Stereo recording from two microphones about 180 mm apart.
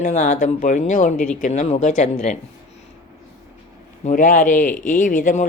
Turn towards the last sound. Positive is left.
turn(degrees=45)  # may be behind; listen again after turning